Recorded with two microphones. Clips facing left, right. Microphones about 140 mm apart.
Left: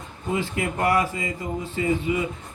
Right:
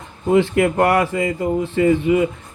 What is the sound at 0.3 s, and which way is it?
Speech, 60° right (ahead or behind).